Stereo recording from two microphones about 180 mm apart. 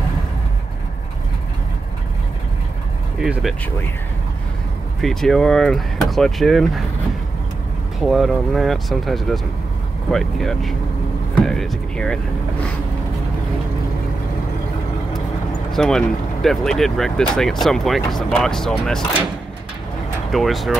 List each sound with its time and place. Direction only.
3.2 s speech: 5° right (ahead or behind)
5.0 s speech: centre (ahead or behind)
8.0 s speech: centre (ahead or behind)
15.7 s speech: 5° left (ahead or behind)
20.2 s speech: centre (ahead or behind)